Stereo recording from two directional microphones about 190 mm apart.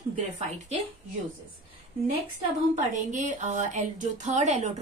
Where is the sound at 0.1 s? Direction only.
40° right (ahead or behind).